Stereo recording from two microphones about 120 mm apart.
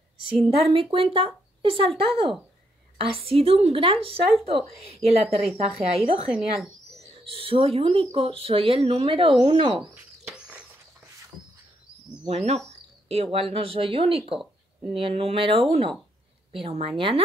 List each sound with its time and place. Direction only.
0.3 s a woman's voice: 50° right (ahead or behind)
3.0 s a woman's voice: 50° right (ahead or behind)
6.3 s speech: centre (ahead or behind)
7.2 s a woman's voice: 50° right (ahead or behind)
9.9 s bird: 10° right (ahead or behind)
11.3 s rodents: centre (ahead or behind)
12.3 s a woman's voice: 60° right (ahead or behind)